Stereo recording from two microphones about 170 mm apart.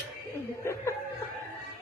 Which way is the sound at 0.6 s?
15° left (ahead or behind).